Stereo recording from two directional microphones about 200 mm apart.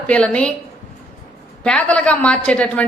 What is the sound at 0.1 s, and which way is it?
Speech, 5° left (ahead or behind).